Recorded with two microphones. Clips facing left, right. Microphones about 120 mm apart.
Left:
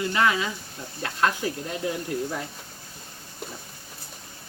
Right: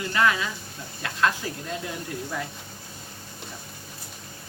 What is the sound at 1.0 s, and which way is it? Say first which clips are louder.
Speech: even; 35° left (ahead or behind).